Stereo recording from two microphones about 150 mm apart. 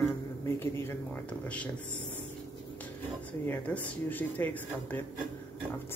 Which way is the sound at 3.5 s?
10° left (ahead or behind).